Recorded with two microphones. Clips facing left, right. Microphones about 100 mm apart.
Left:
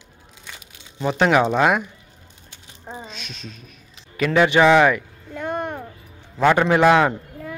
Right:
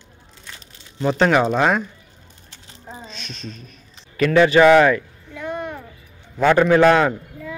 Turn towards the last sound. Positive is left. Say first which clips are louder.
# right 1 dB
turn(degrees=10)  # may be behind; listen again after turning